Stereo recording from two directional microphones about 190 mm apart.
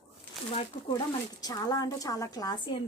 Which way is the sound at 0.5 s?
25° left (ahead or behind).